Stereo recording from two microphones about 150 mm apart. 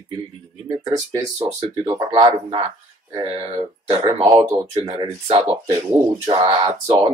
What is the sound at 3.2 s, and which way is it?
Speech, 25° right (ahead or behind).